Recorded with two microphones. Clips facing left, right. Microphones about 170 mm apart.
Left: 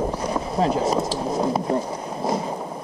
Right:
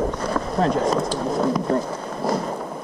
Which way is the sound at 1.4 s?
25° left (ahead or behind).